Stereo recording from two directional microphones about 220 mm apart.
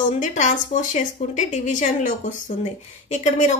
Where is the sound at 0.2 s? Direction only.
35° left (ahead or behind).